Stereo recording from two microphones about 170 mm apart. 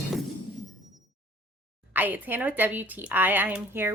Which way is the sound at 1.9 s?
10° right (ahead or behind).